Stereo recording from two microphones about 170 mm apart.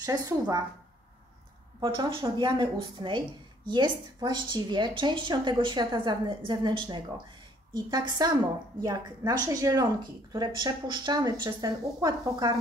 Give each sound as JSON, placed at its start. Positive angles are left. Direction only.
{"t": 0.0, "sound": "a woman's voice", "side_deg": -20}
{"t": 1.8, "sound": "a woman's voice", "side_deg": -25}